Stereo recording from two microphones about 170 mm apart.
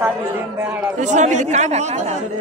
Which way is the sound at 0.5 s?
10° right (ahead or behind).